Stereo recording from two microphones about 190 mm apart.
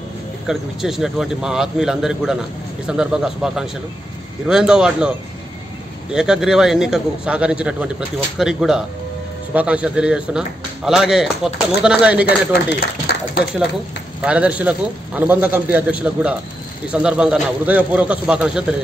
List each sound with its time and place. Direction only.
0.5 s a man's voice: centre (ahead or behind)
6.1 s a man's voice: 5° right (ahead or behind)
13.0 s a sound: 50° left (ahead or behind)
14.2 s a man's voice: 5° right (ahead or behind)